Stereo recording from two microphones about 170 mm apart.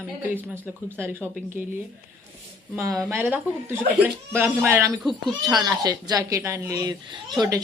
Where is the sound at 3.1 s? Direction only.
10° right (ahead or behind).